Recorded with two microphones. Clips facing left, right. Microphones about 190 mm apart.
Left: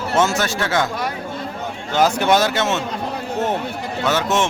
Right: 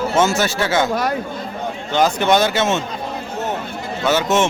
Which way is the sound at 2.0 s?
10° left (ahead or behind).